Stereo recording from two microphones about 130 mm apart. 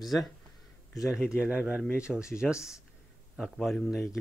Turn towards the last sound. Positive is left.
turn(degrees=0)  # may be behind; listen again after turning